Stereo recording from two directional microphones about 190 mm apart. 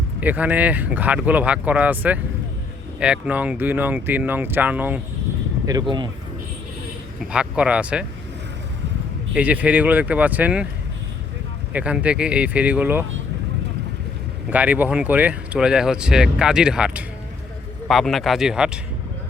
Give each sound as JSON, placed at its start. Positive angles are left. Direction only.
{"t": 0.2, "sound": "speech", "side_deg": -10}
{"t": 5.7, "sound": "speech", "side_deg": -20}
{"t": 7.2, "sound": "speech", "side_deg": -5}
{"t": 9.3, "sound": "speech", "side_deg": -5}
{"t": 11.7, "sound": "speech", "side_deg": -5}
{"t": 14.5, "sound": "speech", "side_deg": -10}